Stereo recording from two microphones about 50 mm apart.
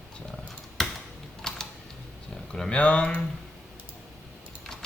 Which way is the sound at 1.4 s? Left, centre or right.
Centre.